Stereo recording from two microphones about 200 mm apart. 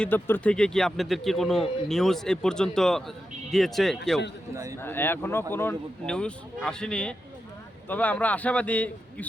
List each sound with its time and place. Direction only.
0.0 s speech: 10° left (ahead or behind)
4.5 s speech: 15° right (ahead or behind)
4.8 s speech: 10° left (ahead or behind)